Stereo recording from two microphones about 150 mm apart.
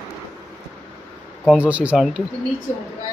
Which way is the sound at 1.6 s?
10° right (ahead or behind).